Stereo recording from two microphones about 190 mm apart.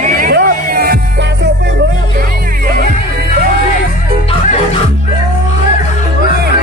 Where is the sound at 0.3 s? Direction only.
55° right (ahead or behind).